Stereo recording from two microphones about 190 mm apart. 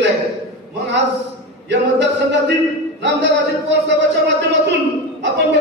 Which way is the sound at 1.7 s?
70° right (ahead or behind).